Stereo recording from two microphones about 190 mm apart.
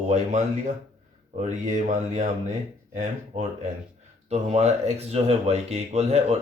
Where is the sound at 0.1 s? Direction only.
40° right (ahead or behind).